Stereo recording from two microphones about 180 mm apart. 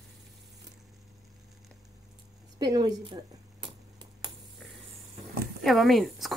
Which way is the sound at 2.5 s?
25° right (ahead or behind).